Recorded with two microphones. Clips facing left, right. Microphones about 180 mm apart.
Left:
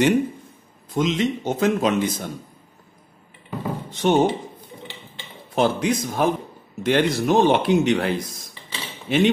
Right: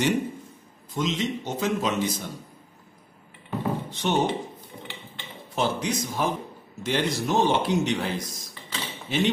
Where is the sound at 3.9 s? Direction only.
50° left (ahead or behind).